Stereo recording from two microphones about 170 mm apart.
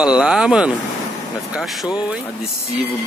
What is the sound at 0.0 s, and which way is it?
Speech, 5° right (ahead or behind).